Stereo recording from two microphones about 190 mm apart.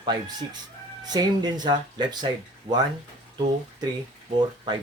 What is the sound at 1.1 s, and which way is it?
Speech, 20° right (ahead or behind).